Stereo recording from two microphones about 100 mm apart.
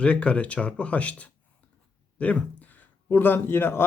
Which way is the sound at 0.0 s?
10° left (ahead or behind).